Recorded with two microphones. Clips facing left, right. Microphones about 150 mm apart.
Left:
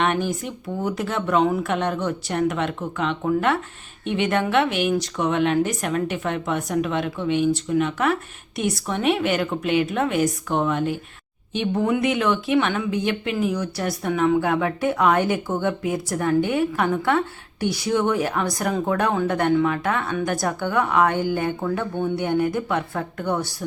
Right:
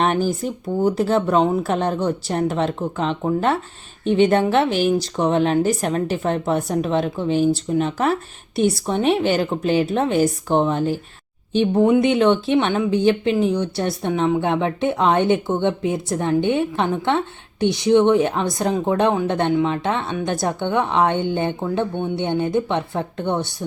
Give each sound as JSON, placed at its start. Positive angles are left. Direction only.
{"t": 0.0, "sound": "speech", "side_deg": -35}